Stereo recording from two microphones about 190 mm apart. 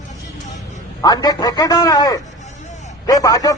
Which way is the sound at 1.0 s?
20° left (ahead or behind).